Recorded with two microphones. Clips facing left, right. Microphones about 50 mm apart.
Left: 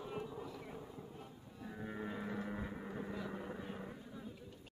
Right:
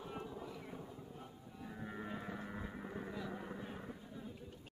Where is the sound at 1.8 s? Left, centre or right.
Centre.